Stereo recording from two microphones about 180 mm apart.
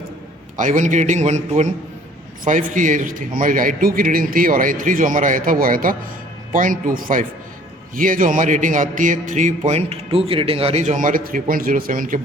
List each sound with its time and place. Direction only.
0.5 s a man's voice: 45° right (ahead or behind)